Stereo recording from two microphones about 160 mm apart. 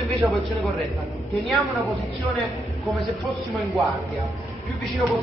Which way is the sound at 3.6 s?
Centre (ahead or behind).